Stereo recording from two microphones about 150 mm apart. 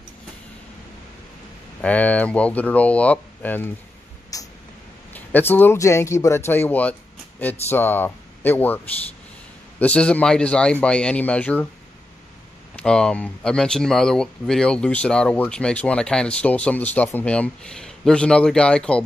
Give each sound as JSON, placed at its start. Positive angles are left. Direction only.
{"t": 1.8, "sound": "speech", "side_deg": 10}
{"t": 4.3, "sound": "a sound", "side_deg": 20}
{"t": 5.1, "sound": "speech", "side_deg": 15}
{"t": 12.7, "sound": "speech", "side_deg": 5}